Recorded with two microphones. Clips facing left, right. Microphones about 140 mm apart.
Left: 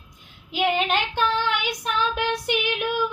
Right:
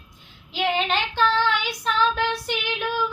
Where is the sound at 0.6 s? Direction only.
15° left (ahead or behind).